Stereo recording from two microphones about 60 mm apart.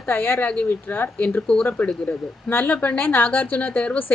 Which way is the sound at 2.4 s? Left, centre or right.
Left.